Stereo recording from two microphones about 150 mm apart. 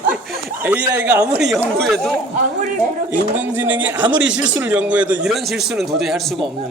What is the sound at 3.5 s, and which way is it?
Speech, 10° right (ahead or behind).